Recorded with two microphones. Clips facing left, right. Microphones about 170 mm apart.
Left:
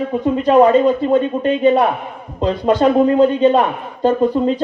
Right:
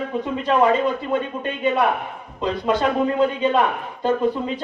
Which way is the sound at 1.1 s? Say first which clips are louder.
Left 9 dB; 40° left (ahead or behind).